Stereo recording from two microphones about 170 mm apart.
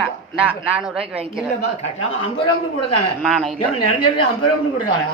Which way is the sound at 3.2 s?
Centre (ahead or behind).